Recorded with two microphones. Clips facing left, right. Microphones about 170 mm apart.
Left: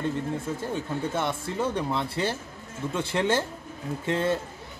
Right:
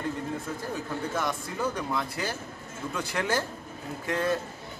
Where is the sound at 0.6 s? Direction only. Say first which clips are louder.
Left 3 dB; 25° left (ahead or behind).